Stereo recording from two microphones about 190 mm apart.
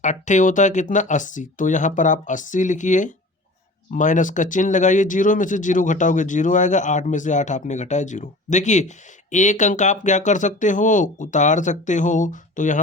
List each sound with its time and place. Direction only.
0.0 s speech: 40° left (ahead or behind)